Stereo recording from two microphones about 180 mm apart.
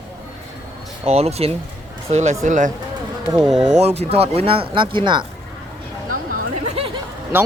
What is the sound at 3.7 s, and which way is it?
Speech, 35° right (ahead or behind).